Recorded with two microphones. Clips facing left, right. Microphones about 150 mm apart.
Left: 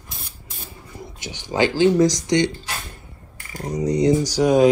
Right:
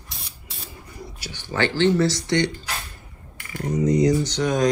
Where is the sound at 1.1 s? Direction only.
20° left (ahead or behind).